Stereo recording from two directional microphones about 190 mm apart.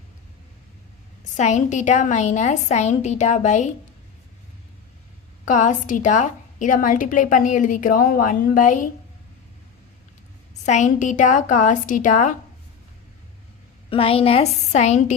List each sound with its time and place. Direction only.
1.4 s a woman's voice: 40° left (ahead or behind)
5.5 s a woman's voice: 40° left (ahead or behind)
10.7 s a woman's voice: 40° left (ahead or behind)
13.9 s a woman's voice: 30° left (ahead or behind)